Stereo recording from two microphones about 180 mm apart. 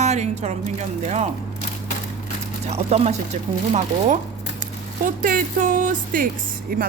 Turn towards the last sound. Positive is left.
turn(degrees=-55)  # may be behind; listen again after turning